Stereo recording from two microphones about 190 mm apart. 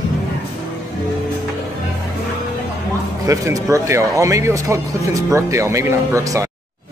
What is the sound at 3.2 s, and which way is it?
Speech, 15° right (ahead or behind).